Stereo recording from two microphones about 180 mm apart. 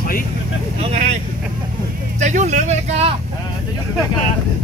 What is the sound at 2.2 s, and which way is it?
Speech, 40° right (ahead or behind).